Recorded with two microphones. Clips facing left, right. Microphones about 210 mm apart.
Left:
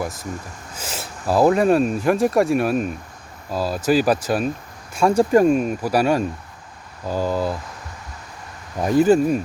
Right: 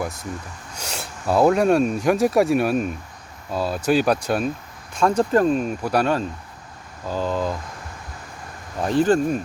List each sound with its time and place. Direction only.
0.7 s speech: centre (ahead or behind)
8.8 s speech: 10° left (ahead or behind)